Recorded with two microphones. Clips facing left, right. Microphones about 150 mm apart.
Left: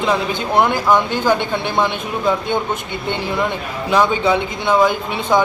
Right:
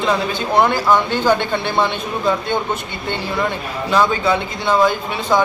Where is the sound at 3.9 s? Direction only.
15° left (ahead or behind).